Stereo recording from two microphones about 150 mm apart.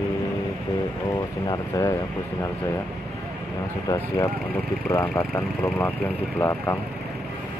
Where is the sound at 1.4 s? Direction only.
25° left (ahead or behind).